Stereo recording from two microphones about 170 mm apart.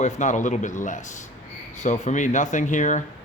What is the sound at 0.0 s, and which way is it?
Speech, 45° left (ahead or behind).